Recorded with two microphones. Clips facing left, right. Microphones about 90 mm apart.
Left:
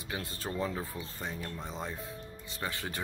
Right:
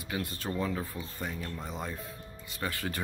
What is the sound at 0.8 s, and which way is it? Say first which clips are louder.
Speech: right 2 dB; centre (ahead or behind).